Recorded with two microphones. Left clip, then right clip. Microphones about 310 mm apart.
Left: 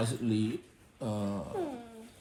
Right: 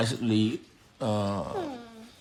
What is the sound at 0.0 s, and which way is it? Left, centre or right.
A man's voice, right.